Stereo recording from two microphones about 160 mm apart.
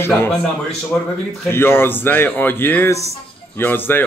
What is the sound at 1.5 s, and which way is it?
Speech, 15° left (ahead or behind).